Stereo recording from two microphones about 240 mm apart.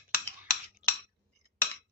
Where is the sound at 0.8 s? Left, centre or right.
Centre.